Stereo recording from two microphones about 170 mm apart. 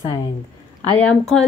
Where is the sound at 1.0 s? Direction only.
5° left (ahead or behind).